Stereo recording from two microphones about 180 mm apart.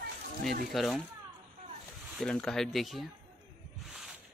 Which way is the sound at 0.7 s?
Centre (ahead or behind).